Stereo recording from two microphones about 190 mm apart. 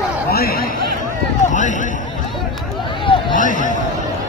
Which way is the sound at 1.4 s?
40° left (ahead or behind).